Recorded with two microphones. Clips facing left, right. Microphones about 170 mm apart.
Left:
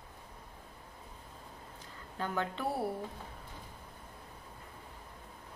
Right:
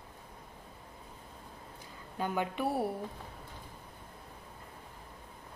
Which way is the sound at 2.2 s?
15° right (ahead or behind).